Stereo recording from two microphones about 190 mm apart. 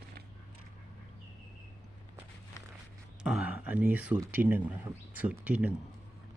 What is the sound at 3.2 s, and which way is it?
Speech, 5° right (ahead or behind).